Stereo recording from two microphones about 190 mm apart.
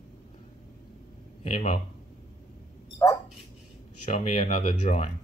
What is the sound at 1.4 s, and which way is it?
Speech, 35° left (ahead or behind).